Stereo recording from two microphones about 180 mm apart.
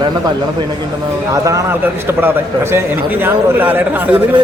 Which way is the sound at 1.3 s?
20° right (ahead or behind).